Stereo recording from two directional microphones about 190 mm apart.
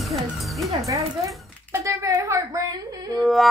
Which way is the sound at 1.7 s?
15° right (ahead or behind).